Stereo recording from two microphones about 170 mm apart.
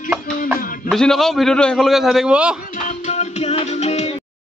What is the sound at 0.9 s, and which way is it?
A man's voice, centre (ahead or behind).